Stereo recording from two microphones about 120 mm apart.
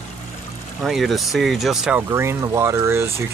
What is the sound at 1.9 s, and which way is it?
Speech, 20° right (ahead or behind).